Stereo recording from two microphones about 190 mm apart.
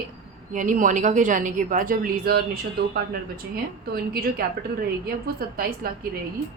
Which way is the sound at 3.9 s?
50° right (ahead or behind).